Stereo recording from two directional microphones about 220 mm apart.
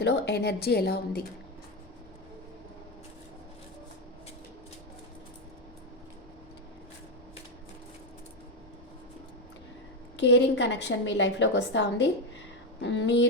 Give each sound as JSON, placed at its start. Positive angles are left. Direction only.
{"t": 0.0, "sound": "a woman's voice", "side_deg": 50}
{"t": 10.2, "sound": "a woman's voice", "side_deg": 55}